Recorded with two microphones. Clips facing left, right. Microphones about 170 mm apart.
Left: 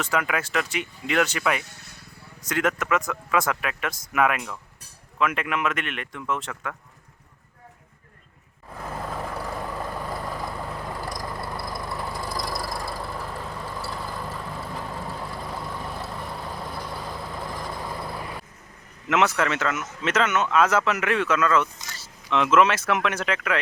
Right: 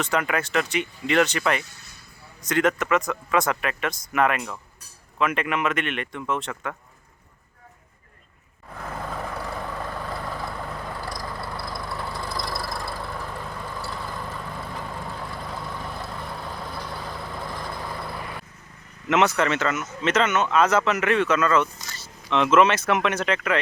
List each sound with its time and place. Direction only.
0.0 s speech: 5° left (ahead or behind)
1.6 s speech: 65° left (ahead or behind)
2.4 s speech: 5° left (ahead or behind)
8.7 s vehicle: 10° left (ahead or behind)
19.0 s speech: 5° left (ahead or behind)